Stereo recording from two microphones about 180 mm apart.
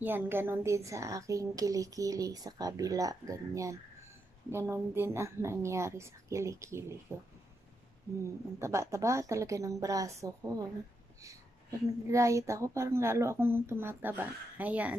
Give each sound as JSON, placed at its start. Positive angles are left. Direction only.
{"t": 0.0, "sound": "a woman's voice", "side_deg": -10}
{"t": 8.5, "sound": "a woman's voice", "side_deg": -15}
{"t": 12.1, "sound": "a woman's voice", "side_deg": -15}